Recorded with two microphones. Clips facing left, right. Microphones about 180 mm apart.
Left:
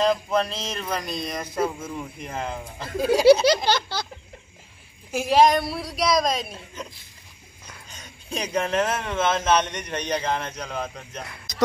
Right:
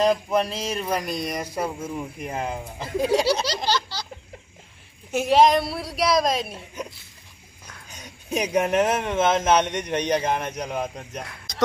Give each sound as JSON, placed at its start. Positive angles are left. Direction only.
{"t": 0.0, "sound": "speech", "side_deg": -10}
{"t": 3.4, "sound": "a sound", "side_deg": 55}
{"t": 5.1, "sound": "a woman's voice", "side_deg": 0}
{"t": 7.9, "sound": "speech", "side_deg": -15}